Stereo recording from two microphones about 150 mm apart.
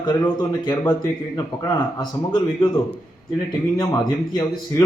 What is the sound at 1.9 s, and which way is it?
Speech, 25° left (ahead or behind).